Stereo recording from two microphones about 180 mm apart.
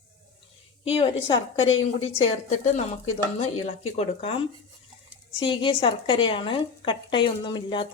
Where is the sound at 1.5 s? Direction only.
90° left.